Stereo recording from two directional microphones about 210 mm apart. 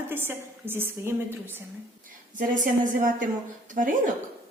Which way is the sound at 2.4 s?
40° right (ahead or behind).